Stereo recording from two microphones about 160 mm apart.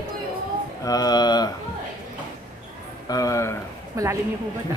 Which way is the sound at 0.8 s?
25° left (ahead or behind).